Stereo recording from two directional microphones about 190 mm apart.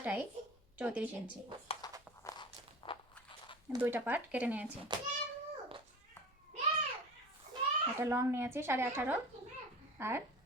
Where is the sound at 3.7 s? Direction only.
10° right (ahead or behind).